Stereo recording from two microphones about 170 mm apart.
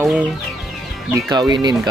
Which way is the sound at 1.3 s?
25° right (ahead or behind).